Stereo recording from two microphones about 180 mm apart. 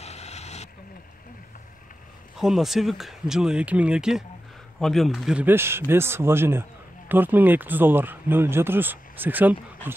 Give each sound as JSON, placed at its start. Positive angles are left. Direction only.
{"t": 0.0, "sound": "vehicle", "side_deg": 35}
{"t": 2.3, "sound": "speech", "side_deg": 0}